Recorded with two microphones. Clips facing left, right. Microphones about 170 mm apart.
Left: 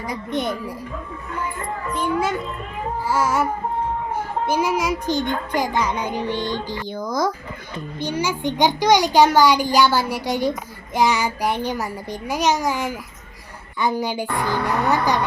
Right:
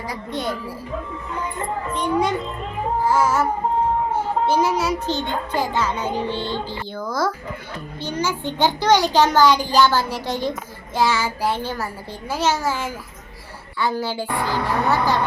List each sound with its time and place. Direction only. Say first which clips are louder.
0.1 s speech: left 3 dB; 20° left (ahead or behind)
2.0 s a child's voice: right 1 dB; 5° left (ahead or behind)